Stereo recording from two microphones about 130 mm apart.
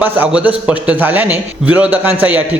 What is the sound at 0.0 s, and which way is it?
A man's voice, 10° right (ahead or behind).